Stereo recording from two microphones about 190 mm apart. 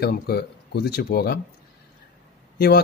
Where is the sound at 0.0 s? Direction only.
55° left (ahead or behind).